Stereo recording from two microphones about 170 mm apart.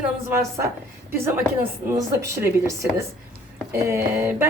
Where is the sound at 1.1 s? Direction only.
15° right (ahead or behind).